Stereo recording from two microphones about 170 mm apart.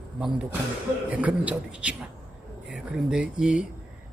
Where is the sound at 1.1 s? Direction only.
10° right (ahead or behind).